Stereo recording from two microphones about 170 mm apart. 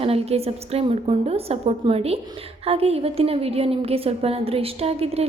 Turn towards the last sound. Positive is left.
turn(degrees=-35)  # may be behind; listen again after turning